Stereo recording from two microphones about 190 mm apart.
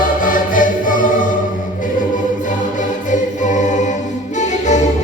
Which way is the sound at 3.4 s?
40° left (ahead or behind).